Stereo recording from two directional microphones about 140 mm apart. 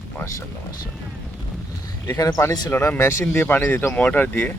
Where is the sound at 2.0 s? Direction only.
25° left (ahead or behind).